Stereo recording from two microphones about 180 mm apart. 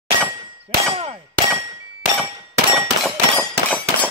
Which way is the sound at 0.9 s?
30° right (ahead or behind).